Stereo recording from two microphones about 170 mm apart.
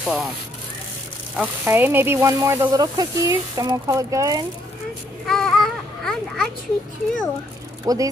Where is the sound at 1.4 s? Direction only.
10° right (ahead or behind).